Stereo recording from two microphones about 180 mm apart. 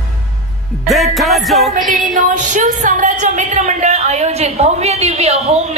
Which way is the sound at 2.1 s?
45° right (ahead or behind).